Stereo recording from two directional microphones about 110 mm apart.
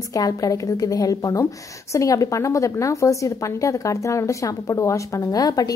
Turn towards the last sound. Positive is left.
turn(degrees=35)  # may be behind; listen again after turning